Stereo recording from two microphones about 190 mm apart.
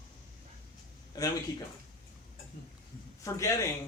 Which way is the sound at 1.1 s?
20° left (ahead or behind).